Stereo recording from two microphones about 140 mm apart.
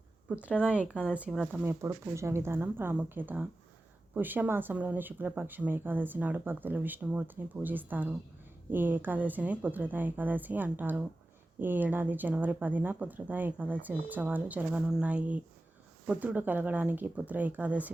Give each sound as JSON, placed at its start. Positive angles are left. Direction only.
{"t": 0.3, "sound": "speech", "side_deg": -10}
{"t": 1.6, "sound": "speech", "side_deg": -20}